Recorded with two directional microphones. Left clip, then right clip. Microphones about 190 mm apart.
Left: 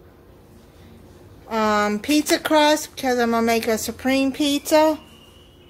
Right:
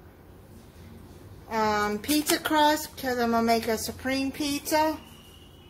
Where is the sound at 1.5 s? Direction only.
45° left (ahead or behind).